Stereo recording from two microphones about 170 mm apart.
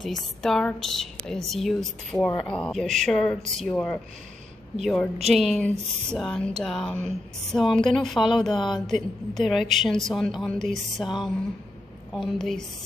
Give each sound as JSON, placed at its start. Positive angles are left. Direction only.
{"t": 0.0, "sound": "a woman's voice", "side_deg": 0}
{"t": 8.5, "sound": "speech", "side_deg": 25}
{"t": 8.8, "sound": "a woman's voice", "side_deg": 0}